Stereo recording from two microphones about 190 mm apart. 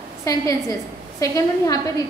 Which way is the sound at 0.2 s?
15° left (ahead or behind).